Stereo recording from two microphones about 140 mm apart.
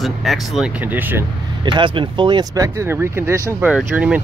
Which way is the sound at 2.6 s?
20° right (ahead or behind).